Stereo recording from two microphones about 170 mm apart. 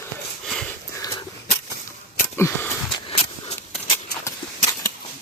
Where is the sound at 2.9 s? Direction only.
35° left (ahead or behind).